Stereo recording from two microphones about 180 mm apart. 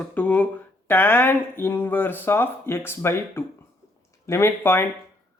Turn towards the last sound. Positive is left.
turn(degrees=15)  # may be behind; listen again after turning